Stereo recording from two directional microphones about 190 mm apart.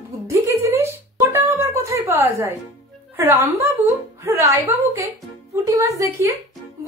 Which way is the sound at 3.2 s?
15° right (ahead or behind).